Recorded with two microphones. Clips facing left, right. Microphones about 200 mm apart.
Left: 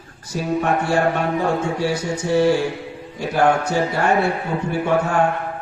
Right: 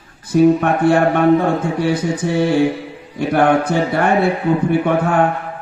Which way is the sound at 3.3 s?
55° right (ahead or behind).